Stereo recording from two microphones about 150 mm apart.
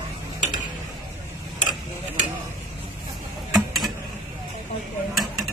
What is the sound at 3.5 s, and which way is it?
Mechanisms, centre (ahead or behind).